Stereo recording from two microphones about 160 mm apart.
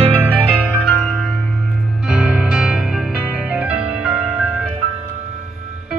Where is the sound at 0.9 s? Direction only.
5° left (ahead or behind).